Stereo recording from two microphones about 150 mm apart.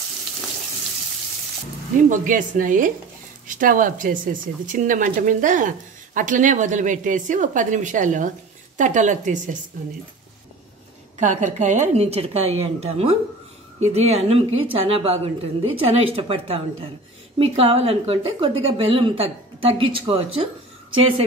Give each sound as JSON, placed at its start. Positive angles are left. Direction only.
{"t": 2.0, "sound": "speech", "side_deg": -60}
{"t": 11.1, "sound": "a woman's voice", "side_deg": -55}